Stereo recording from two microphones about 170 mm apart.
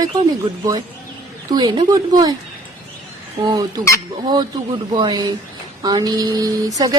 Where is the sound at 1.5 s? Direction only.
25° right (ahead or behind).